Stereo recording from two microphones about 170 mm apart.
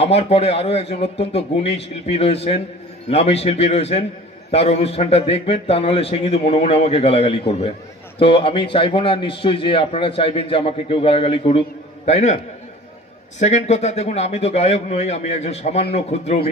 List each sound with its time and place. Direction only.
0.0 s a man's voice: 35° left (ahead or behind)
13.4 s a man's voice: 40° left (ahead or behind)